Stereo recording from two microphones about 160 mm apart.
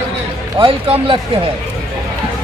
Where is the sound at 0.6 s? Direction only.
35° right (ahead or behind).